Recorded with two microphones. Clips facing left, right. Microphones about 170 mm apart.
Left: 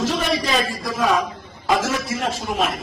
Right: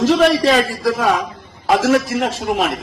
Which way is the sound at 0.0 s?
85° right.